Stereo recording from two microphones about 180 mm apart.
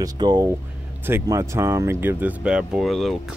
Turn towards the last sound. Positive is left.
turn(degrees=0)  # may be behind; listen again after turning